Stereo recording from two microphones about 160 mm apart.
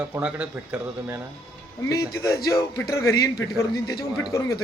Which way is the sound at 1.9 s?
20° left (ahead or behind).